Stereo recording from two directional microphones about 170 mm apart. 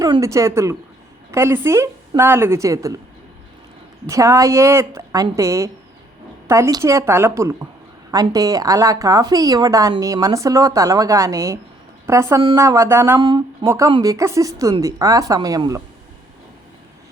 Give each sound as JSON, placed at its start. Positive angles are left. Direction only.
{"t": 0.0, "sound": "a woman's voice", "side_deg": -20}
{"t": 4.1, "sound": "a woman's voice", "side_deg": -20}